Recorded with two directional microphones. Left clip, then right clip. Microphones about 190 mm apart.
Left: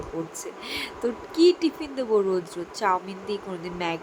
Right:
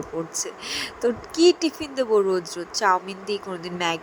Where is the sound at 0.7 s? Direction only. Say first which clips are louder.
Right 4 dB; 25° right (ahead or behind).